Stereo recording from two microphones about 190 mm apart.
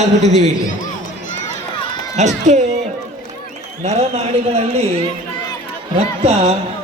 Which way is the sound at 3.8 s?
35° right (ahead or behind).